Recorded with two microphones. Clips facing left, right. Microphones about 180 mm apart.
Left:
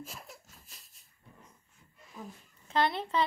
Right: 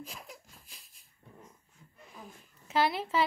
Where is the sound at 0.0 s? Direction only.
5° left (ahead or behind).